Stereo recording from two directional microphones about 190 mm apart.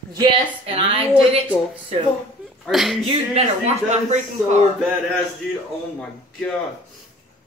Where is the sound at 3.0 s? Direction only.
35° right (ahead or behind).